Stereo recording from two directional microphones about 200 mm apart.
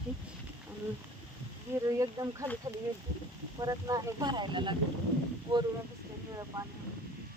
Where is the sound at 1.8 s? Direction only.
15° right (ahead or behind).